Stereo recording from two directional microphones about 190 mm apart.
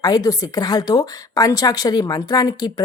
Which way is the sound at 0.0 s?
20° left (ahead or behind).